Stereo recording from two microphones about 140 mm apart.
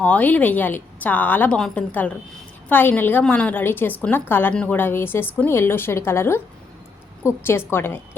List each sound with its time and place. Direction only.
0.0 s a woman's voice: 10° left (ahead or behind)